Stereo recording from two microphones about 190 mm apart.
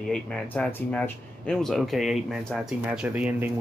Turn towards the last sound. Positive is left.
turn(degrees=-10)  # may be behind; listen again after turning